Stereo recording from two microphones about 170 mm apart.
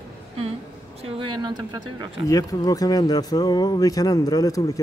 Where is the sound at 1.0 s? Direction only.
30° right (ahead or behind).